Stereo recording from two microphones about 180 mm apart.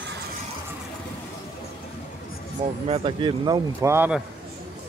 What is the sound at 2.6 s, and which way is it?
Speech, 30° right (ahead or behind).